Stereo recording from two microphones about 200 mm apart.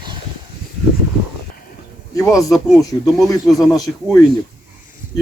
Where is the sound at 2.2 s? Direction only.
15° left (ahead or behind).